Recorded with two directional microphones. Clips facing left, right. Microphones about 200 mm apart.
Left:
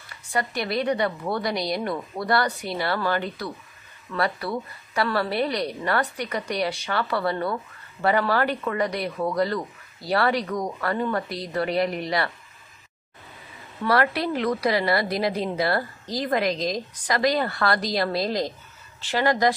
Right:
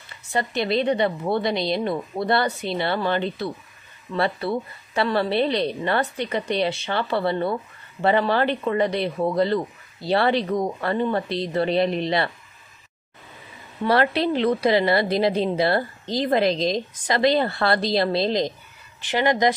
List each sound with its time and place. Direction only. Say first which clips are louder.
0.0 s a woman's voice: right 2 dB; 25° right (ahead or behind)
13.8 s a woman's voice: right 3 dB; 25° right (ahead or behind)